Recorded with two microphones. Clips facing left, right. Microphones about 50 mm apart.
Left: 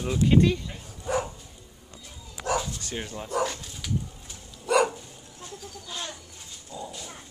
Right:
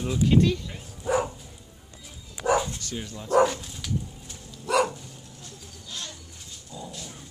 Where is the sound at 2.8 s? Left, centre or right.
Left.